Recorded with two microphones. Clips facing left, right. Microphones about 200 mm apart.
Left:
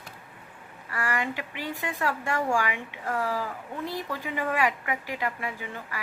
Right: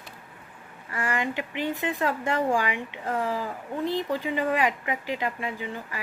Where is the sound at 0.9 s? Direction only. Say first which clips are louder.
Right 2 dB; 15° right (ahead or behind).